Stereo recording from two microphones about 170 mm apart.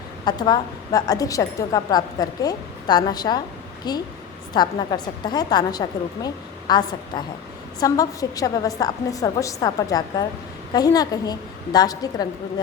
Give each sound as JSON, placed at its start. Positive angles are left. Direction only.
{"t": 0.3, "sound": "a woman's voice", "side_deg": 25}